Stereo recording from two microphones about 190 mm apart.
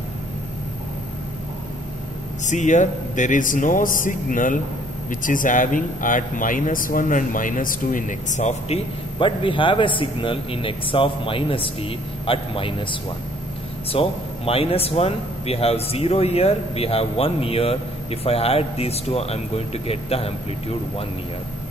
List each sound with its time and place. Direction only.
2.4 s a man's voice: 40° left (ahead or behind)
13.9 s speech: 30° left (ahead or behind)